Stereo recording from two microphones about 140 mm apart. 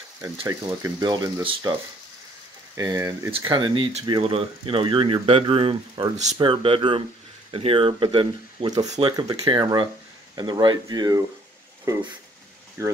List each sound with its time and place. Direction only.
0.2 s speech: 20° right (ahead or behind)
1.0 s speech: 30° right (ahead or behind)
2.7 s speech: 20° right (ahead or behind)
3.3 s speech: 40° right (ahead or behind); by 12.9 s 20° right (ahead or behind)